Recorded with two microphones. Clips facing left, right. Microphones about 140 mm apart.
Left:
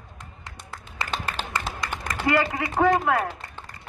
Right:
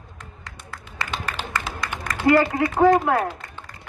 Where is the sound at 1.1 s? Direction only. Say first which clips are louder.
Right 1 dB; 30° left (ahead or behind).